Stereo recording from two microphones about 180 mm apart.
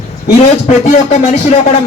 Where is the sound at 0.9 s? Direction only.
40° left (ahead or behind).